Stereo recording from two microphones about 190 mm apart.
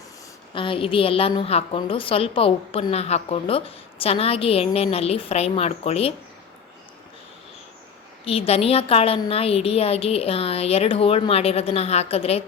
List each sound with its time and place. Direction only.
0.5 s a woman's voice: 25° left (ahead or behind)
8.2 s a woman's voice: 30° left (ahead or behind)